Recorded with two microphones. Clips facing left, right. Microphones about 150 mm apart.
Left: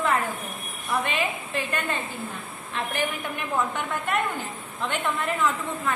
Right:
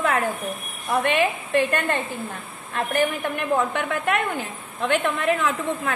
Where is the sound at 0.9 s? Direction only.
60° right (ahead or behind).